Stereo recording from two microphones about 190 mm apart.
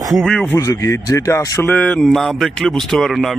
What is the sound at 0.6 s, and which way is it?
Speech, 15° left (ahead or behind).